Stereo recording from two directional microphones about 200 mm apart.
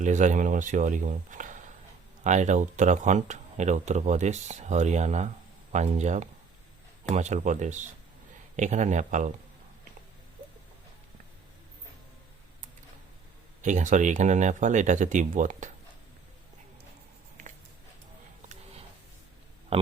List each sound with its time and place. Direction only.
0.0 s speech: 40° right (ahead or behind)
13.6 s speech: 35° right (ahead or behind)
19.7 s speech: 30° right (ahead or behind)